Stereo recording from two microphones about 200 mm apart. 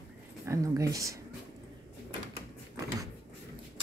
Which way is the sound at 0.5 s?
15° right (ahead or behind).